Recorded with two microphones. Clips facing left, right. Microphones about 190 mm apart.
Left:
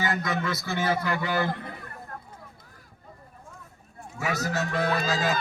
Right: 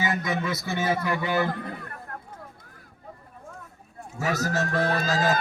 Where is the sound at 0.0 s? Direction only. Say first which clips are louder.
Right 1 dB; 20° right (ahead or behind).